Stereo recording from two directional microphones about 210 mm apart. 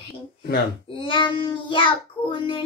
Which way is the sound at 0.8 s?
25° left (ahead or behind).